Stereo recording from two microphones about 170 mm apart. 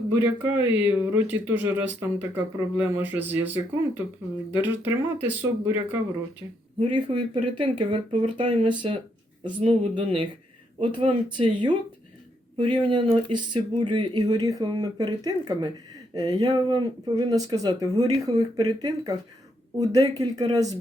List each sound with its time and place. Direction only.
0.1 s speech: 10° right (ahead or behind)
6.7 s speech: 30° right (ahead or behind)